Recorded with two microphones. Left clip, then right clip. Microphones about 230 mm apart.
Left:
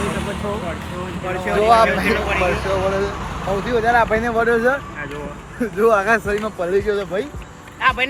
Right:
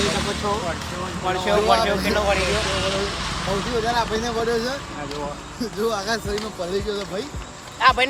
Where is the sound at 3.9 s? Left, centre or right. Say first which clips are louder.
Left 9 dB; centre.